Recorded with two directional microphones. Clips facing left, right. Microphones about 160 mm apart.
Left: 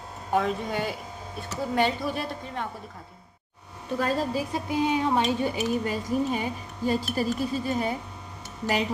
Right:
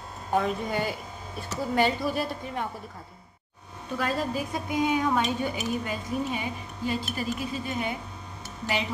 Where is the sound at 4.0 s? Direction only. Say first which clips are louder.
Left 2 dB; 35° left (ahead or behind).